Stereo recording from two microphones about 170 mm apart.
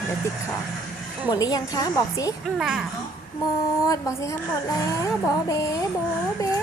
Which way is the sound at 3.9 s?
20° left (ahead or behind).